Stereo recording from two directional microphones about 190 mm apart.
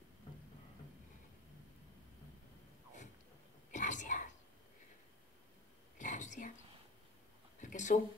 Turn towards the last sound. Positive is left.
turn(degrees=40)  # may be behind; listen again after turning